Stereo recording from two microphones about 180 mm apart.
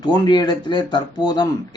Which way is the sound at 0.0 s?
25° left (ahead or behind).